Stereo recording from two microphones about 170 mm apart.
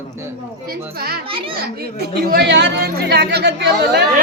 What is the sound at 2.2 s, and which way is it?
Speech, 70° right (ahead or behind).